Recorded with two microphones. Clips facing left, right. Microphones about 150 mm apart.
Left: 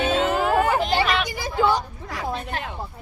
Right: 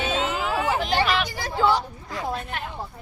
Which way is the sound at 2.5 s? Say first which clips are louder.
Left 2 dB; 40° left (ahead or behind).